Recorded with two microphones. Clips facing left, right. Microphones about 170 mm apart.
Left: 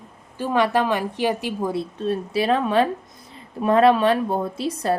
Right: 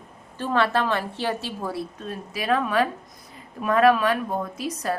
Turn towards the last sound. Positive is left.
turn(degrees=30)  # may be behind; listen again after turning